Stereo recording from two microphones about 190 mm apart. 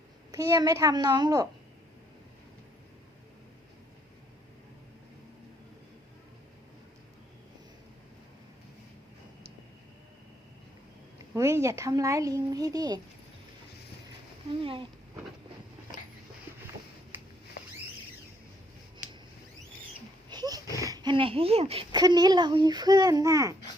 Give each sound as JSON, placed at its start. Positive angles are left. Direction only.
{"t": 0.3, "sound": "speech", "side_deg": -15}
{"t": 11.3, "sound": "a woman's voice", "side_deg": -15}
{"t": 14.6, "sound": "speech", "side_deg": -30}
{"t": 20.3, "sound": "a sound", "side_deg": -20}
{"t": 20.7, "sound": "speech", "side_deg": -20}